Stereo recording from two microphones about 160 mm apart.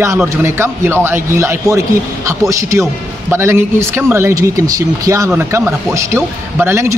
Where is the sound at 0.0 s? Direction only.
15° right (ahead or behind).